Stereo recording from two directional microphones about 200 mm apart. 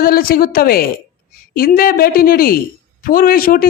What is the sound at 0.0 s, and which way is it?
Speech, 50° left (ahead or behind).